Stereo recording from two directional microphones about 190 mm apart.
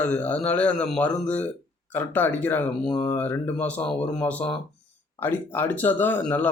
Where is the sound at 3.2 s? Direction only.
10° left (ahead or behind).